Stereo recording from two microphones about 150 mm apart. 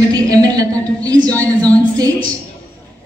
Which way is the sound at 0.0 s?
25° right (ahead or behind).